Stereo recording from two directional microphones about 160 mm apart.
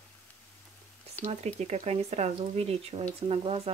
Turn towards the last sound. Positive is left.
turn(degrees=-40)  # may be behind; listen again after turning